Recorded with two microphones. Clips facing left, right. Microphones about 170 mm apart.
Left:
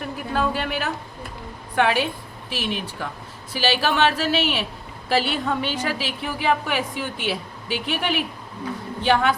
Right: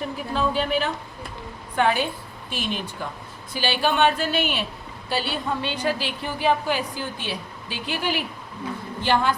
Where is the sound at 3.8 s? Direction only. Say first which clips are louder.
Right 3 dB; 80° left.